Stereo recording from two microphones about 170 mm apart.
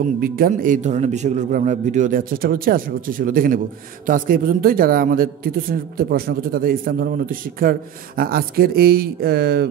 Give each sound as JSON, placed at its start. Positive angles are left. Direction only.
{"t": 0.2, "sound": "a man's voice", "side_deg": -55}